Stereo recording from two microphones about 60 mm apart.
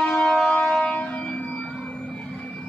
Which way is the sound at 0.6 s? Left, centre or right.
Centre.